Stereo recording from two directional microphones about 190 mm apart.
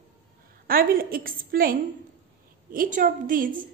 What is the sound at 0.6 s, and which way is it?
A woman's voice, 50° right (ahead or behind).